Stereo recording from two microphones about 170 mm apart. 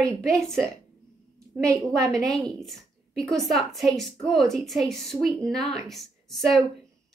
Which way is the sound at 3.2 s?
Centre (ahead or behind).